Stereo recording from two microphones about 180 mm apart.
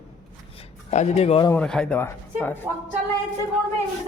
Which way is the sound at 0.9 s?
35° left (ahead or behind).